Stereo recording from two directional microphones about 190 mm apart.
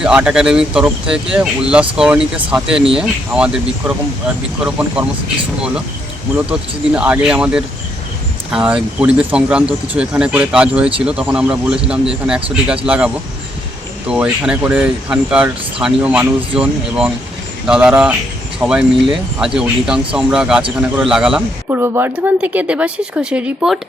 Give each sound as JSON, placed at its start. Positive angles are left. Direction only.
{"t": 0.0, "sound": "speech", "side_deg": -5}
{"t": 6.3, "sound": "speech", "side_deg": -5}
{"t": 14.1, "sound": "speech", "side_deg": -5}